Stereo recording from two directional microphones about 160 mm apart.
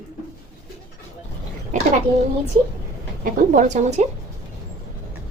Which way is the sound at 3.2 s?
55° right (ahead or behind).